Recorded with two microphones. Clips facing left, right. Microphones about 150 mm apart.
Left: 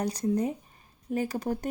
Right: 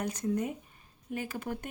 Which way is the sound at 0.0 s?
35° left (ahead or behind).